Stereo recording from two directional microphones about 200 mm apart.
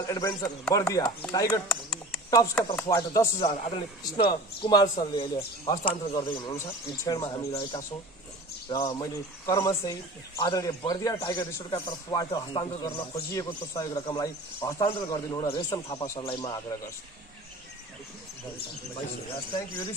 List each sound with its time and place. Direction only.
0.0 s speech: 20° left (ahead or behind)
2.5 s speech: 5° left (ahead or behind)
3.1 s speech: 20° left (ahead or behind)